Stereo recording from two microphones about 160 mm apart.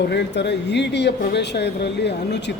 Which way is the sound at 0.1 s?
90° left.